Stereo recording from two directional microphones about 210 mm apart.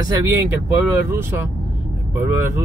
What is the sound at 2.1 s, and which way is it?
Speech, 10° right (ahead or behind).